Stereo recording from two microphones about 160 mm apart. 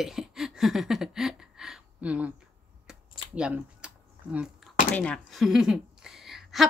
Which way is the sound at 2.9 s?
5° right (ahead or behind).